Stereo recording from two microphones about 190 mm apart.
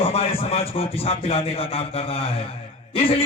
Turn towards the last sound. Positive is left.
turn(degrees=30)  # may be behind; listen again after turning